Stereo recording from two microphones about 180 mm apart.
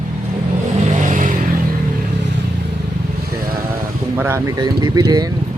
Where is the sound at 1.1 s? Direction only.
45° right (ahead or behind).